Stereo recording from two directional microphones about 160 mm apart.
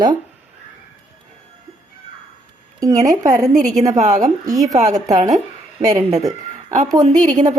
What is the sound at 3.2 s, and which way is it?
A woman's voice, 50° right (ahead or behind).